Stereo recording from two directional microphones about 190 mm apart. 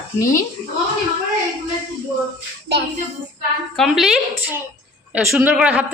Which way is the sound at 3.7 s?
Centre (ahead or behind).